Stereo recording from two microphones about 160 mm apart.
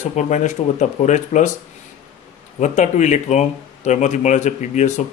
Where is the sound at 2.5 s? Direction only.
50° left (ahead or behind).